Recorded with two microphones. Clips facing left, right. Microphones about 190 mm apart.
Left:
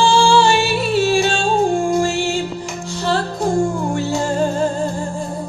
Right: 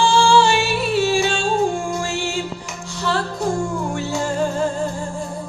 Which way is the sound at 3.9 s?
35° left (ahead or behind).